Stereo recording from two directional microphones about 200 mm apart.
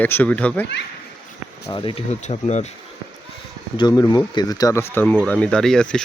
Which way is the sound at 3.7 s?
20° left (ahead or behind).